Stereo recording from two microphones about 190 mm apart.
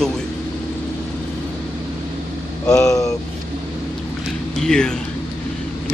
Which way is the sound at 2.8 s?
15° left (ahead or behind).